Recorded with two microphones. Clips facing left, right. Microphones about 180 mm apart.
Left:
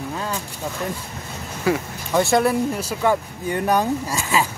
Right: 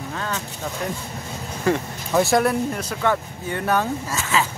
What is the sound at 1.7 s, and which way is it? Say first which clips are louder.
Speech: even; 10° left (ahead or behind).